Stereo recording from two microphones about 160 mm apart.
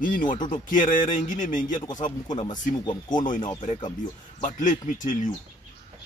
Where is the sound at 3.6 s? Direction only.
40° left (ahead or behind).